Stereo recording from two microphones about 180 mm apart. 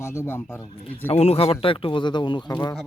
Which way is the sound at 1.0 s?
35° left (ahead or behind).